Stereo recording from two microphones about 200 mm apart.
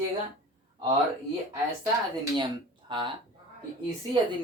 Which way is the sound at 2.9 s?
25° right (ahead or behind).